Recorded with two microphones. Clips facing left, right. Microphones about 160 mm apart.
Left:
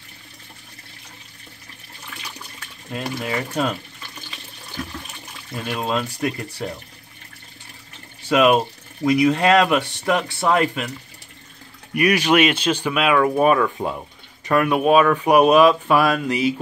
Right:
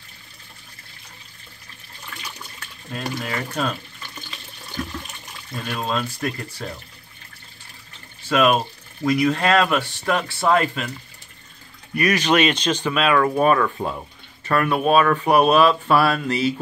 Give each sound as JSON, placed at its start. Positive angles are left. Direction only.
{"t": 2.9, "sound": "speech", "side_deg": 15}
{"t": 5.6, "sound": "speech", "side_deg": 15}
{"t": 8.3, "sound": "speech", "side_deg": 15}
{"t": 11.9, "sound": "speech", "side_deg": 10}